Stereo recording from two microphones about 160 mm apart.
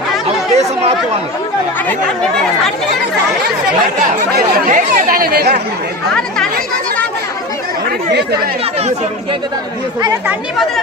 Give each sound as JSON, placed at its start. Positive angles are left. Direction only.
{"t": 0.5, "sound": "chatter", "side_deg": -40}
{"t": 4.4, "sound": "speech", "side_deg": -65}